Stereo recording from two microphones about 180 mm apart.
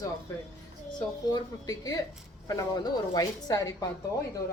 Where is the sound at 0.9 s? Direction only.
20° left (ahead or behind).